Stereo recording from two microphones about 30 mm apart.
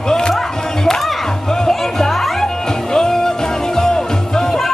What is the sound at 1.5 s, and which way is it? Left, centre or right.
Music, centre.